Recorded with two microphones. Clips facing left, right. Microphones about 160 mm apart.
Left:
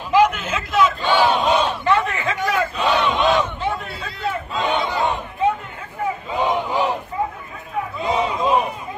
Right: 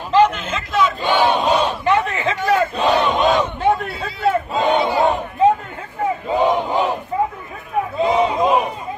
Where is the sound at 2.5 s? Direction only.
40° right (ahead or behind).